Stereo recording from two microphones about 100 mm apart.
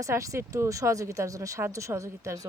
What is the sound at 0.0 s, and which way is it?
Speech, 30° right (ahead or behind).